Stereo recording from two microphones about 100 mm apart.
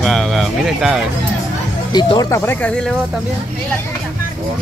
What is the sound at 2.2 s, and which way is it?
Speech, 30° left (ahead or behind).